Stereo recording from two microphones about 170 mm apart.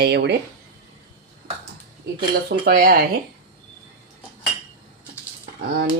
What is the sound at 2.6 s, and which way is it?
Speech, 60° right (ahead or behind).